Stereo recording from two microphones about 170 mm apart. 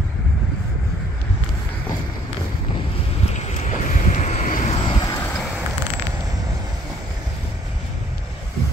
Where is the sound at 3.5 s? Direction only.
45° left (ahead or behind).